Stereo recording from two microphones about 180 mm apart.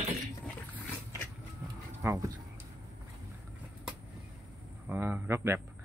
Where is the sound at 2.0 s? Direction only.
20° right (ahead or behind).